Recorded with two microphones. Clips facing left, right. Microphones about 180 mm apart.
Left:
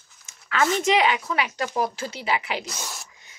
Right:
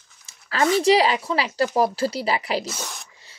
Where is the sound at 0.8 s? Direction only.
35° right (ahead or behind).